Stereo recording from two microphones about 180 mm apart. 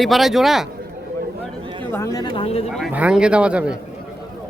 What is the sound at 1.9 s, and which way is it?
Speech, 20° left (ahead or behind).